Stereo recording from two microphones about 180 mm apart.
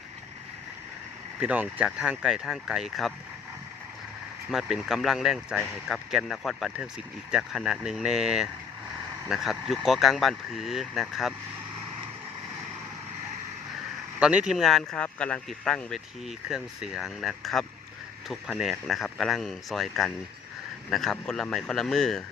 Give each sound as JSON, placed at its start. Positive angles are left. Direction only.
{"t": 1.4, "sound": "speech", "side_deg": -5}
{"t": 4.5, "sound": "speech", "side_deg": 0}
{"t": 14.2, "sound": "speech", "side_deg": -5}